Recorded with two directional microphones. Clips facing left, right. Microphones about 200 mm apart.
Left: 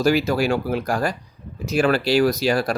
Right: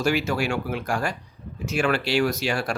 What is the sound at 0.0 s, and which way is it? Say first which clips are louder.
Speech: left 5 dB; 35° left (ahead or behind).